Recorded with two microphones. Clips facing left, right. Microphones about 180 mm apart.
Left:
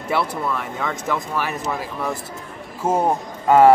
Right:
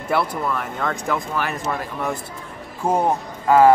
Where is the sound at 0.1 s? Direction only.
Centre (ahead or behind).